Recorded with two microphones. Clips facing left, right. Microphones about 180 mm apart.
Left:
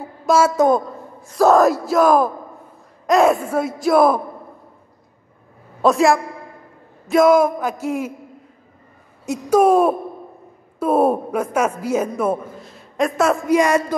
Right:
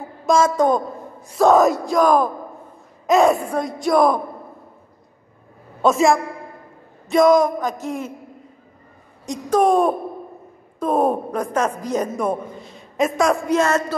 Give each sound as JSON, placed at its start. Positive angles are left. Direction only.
{"t": 0.3, "sound": "a woman's voice", "side_deg": 10}
{"t": 5.8, "sound": "a woman's voice", "side_deg": 0}
{"t": 9.2, "sound": "a woman's voice", "side_deg": 5}